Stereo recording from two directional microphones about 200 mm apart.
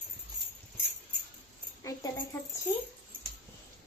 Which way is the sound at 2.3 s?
15° left (ahead or behind).